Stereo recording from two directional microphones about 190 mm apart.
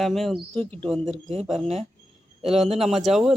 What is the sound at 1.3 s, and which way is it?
Speech, 35° right (ahead or behind).